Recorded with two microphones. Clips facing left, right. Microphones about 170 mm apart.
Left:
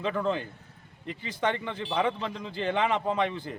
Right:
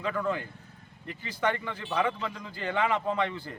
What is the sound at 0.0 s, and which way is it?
A man's voice, 25° left (ahead or behind).